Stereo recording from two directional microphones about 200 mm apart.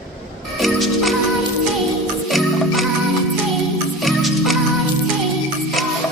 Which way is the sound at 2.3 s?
Centre (ahead or behind).